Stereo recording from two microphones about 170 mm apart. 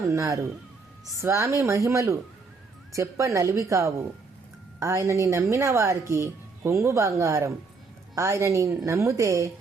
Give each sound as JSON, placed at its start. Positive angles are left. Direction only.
{"t": 0.1, "sound": "speech", "side_deg": -20}